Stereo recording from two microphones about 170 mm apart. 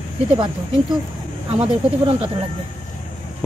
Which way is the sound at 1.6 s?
35° right (ahead or behind).